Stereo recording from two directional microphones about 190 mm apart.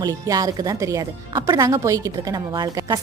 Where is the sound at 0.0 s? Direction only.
20° right (ahead or behind).